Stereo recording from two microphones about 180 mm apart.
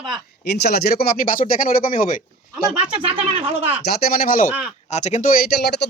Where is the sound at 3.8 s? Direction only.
60° left (ahead or behind).